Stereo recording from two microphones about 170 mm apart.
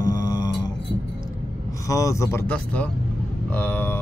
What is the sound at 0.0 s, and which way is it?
Mantra, 20° left (ahead or behind).